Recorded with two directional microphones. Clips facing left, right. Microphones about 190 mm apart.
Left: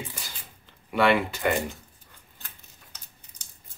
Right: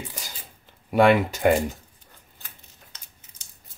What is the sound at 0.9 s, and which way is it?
Speech, 45° right (ahead or behind).